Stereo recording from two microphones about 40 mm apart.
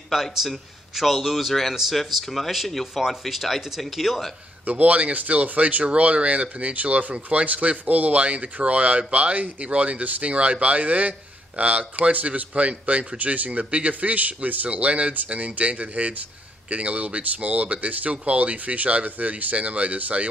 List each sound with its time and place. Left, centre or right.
0.1 s a man's voice: centre
4.6 s speech: right